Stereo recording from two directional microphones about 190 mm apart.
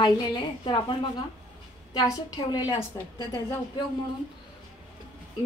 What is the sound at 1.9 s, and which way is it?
A woman's voice, 20° left (ahead or behind).